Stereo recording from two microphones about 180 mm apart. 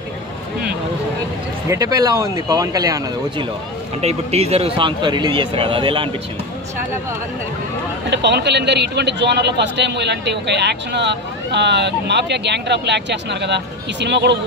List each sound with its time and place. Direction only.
1.7 s speech: 20° right (ahead or behind)
4.0 s speech: 35° right (ahead or behind)
8.1 s speech: 70° right (ahead or behind)